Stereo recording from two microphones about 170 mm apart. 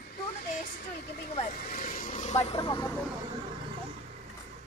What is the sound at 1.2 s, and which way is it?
Vehicle, 50° left (ahead or behind).